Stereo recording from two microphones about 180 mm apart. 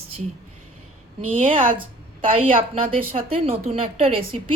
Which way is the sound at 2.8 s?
30° right (ahead or behind).